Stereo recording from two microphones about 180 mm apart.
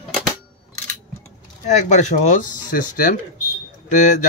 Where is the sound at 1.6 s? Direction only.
40° left (ahead or behind).